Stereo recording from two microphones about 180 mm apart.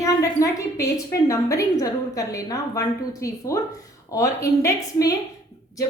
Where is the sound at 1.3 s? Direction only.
20° left (ahead or behind).